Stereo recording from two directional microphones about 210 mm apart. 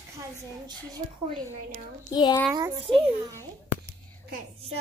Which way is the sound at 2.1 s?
20° left (ahead or behind).